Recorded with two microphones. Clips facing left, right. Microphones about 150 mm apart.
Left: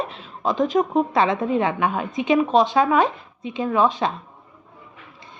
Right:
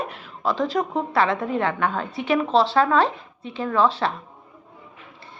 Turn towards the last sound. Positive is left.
turn(degrees=15)  # may be behind; listen again after turning